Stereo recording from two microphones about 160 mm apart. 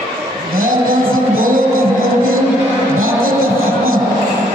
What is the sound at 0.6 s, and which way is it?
Music, 60° right (ahead or behind).